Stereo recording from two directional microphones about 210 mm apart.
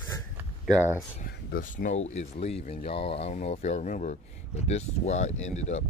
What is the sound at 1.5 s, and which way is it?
Speech, 35° left (ahead or behind).